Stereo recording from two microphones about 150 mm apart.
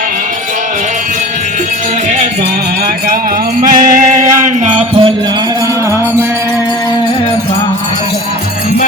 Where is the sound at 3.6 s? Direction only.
70° right (ahead or behind).